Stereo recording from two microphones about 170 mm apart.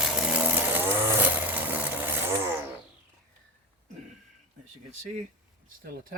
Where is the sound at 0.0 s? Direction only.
5° right (ahead or behind).